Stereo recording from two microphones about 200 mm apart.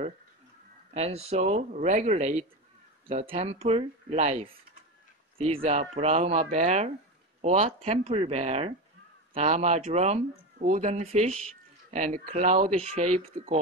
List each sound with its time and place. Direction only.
0.9 s speech: 30° right (ahead or behind)